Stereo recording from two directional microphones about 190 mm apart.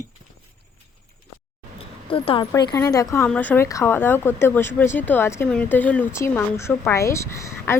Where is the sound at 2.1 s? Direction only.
25° left (ahead or behind).